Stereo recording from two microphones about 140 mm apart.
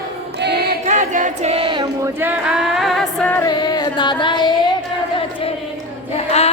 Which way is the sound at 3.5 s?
30° left (ahead or behind).